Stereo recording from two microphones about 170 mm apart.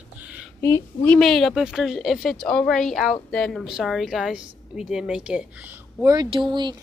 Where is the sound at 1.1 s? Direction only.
Centre (ahead or behind).